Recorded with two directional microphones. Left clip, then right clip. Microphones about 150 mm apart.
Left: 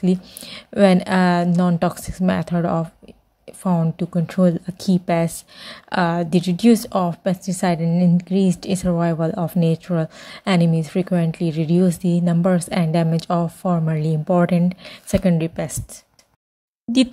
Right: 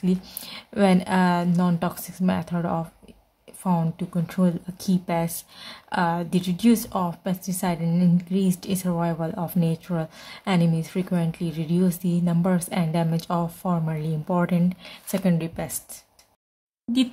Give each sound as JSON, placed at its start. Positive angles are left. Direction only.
{"t": 0.0, "sound": "a woman's voice", "side_deg": 30}